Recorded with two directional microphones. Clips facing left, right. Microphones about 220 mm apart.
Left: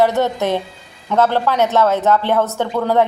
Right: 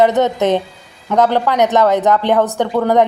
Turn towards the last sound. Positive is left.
turn(degrees=-15)  # may be behind; listen again after turning